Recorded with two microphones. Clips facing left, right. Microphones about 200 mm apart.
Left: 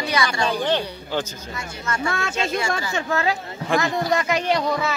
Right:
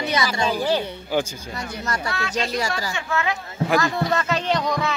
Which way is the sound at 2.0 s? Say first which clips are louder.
Left 3 dB; 45° left (ahead or behind).